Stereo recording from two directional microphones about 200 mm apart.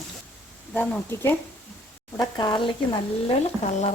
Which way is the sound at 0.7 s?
5° left (ahead or behind).